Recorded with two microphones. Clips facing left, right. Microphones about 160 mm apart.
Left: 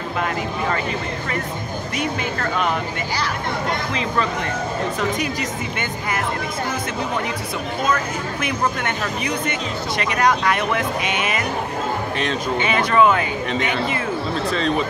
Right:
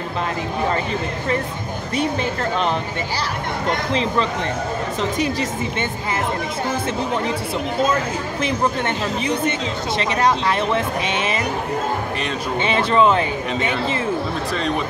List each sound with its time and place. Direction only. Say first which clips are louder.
3.9 s speech: right 3 dB; 30° right (ahead or behind)
7.8 s speech: right 1 dB; 25° right (ahead or behind)
12.5 s speech: right 1 dB; 30° right (ahead or behind)